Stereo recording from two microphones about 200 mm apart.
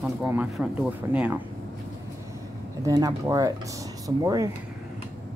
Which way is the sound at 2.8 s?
15° right (ahead or behind).